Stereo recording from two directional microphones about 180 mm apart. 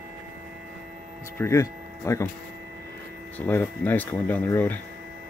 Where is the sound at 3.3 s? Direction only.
10° left (ahead or behind).